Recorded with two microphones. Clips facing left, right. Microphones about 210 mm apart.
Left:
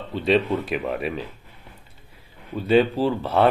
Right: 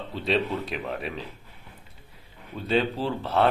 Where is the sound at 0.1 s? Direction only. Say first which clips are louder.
Left 6 dB; centre (ahead or behind).